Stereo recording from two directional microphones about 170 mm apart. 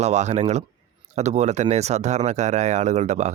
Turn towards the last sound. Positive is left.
turn(degrees=-40)  # may be behind; listen again after turning